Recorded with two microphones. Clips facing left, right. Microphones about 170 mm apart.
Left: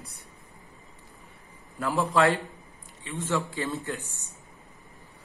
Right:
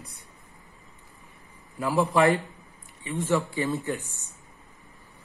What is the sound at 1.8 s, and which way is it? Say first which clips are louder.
A man's voice: right 2 dB; 10° right (ahead or behind).